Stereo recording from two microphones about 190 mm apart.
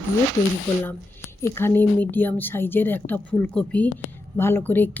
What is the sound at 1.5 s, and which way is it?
A woman's voice, 10° left (ahead or behind).